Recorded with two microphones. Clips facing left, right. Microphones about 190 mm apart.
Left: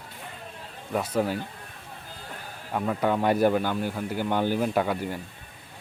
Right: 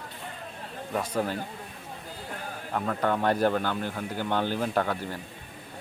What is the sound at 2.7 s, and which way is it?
Speech, 10° left (ahead or behind).